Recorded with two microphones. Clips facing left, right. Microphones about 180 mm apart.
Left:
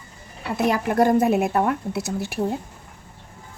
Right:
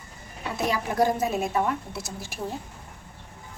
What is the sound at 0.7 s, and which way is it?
A woman's voice, 55° left (ahead or behind).